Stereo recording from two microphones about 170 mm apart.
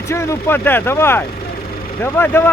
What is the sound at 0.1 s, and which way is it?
Speech, 15° left (ahead or behind).